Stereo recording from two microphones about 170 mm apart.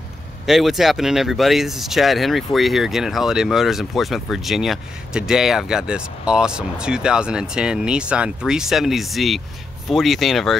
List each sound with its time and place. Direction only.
0.5 s speech: centre (ahead or behind)